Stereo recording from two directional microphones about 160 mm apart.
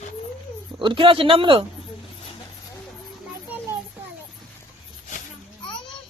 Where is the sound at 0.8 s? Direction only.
30° right (ahead or behind).